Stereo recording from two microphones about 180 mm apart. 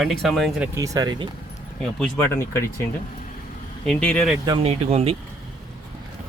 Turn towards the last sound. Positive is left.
turn(degrees=-35)  # may be behind; listen again after turning